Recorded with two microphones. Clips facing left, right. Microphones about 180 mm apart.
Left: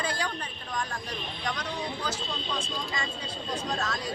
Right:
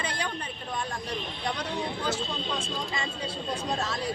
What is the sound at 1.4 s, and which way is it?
Speech, 30° right (ahead or behind).